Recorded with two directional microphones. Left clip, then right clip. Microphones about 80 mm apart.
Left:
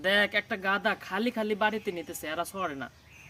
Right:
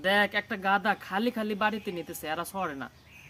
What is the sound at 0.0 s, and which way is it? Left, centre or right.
Speech, centre.